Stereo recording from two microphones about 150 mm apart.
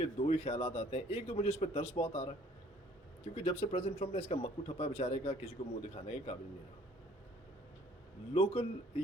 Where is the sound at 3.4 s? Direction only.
40° left (ahead or behind).